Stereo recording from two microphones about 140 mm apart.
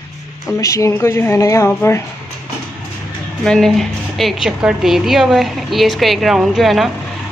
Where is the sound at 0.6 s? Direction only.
20° left (ahead or behind).